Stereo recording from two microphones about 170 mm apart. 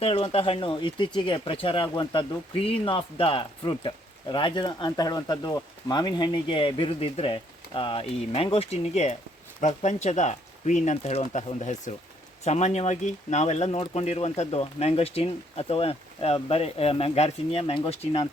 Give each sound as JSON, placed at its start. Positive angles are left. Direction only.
{"t": 0.0, "sound": "speech", "side_deg": 35}